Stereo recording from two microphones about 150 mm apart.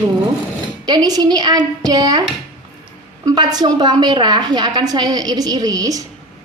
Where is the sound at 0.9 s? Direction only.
25° right (ahead or behind).